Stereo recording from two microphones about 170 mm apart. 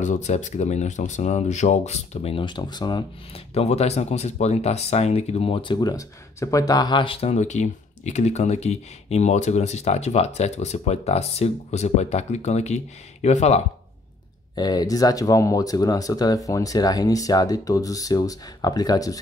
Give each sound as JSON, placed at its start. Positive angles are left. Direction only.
{"t": 0.0, "sound": "speech", "side_deg": 45}
{"t": 14.5, "sound": "speech", "side_deg": 25}